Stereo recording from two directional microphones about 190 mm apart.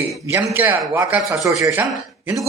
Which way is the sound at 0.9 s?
10° right (ahead or behind).